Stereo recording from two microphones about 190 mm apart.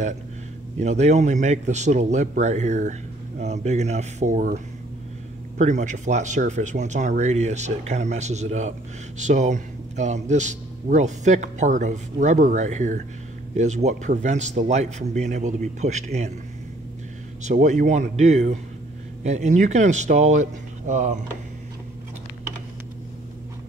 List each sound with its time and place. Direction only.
0.7 s speech: 35° right (ahead or behind)
5.6 s speech: 40° right (ahead or behind)
17.4 s speech: 40° right (ahead or behind)